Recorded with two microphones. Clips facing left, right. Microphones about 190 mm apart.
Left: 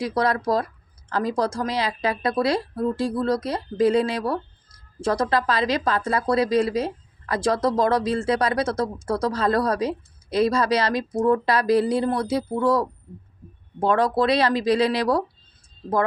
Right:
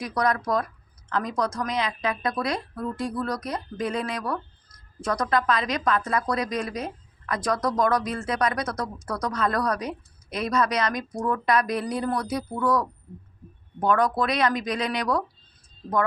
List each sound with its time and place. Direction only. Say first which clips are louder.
0.0 s speech: left 3 dB; 25° left (ahead or behind)